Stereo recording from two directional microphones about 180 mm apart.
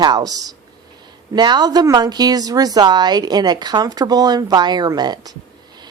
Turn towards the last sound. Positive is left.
turn(degrees=-20)  # may be behind; listen again after turning